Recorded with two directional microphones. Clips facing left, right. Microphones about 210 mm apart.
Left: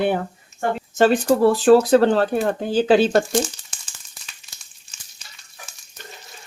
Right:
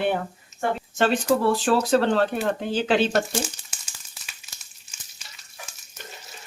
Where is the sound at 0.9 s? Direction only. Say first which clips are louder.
Left 6 dB; 40° left (ahead or behind).